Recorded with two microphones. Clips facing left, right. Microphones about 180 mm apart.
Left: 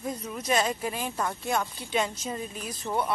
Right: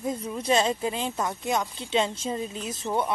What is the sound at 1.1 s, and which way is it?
A woman's voice, 15° right (ahead or behind).